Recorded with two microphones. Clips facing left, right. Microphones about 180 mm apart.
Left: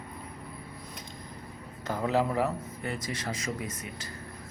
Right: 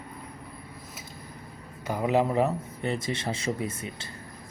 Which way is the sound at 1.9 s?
15° right (ahead or behind).